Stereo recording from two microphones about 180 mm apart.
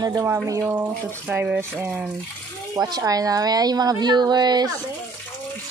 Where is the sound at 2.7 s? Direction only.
20° right (ahead or behind).